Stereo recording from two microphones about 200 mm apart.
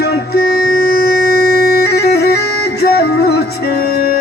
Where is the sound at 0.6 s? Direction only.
50° left (ahead or behind).